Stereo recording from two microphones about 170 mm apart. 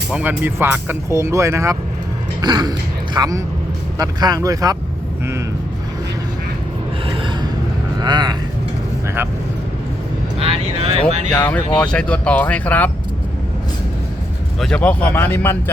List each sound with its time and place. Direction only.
0.1 s speech: 10° right (ahead or behind)
8.0 s speech: 25° right (ahead or behind)
10.4 s speech: 35° right (ahead or behind)
11.3 s speech: 10° left (ahead or behind)
14.6 s speech: 5° left (ahead or behind)